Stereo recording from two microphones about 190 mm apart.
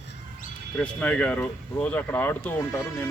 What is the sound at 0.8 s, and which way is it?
Speech, 5° left (ahead or behind).